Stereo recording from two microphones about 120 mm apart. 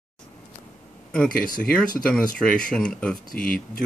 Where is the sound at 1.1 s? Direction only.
10° left (ahead or behind).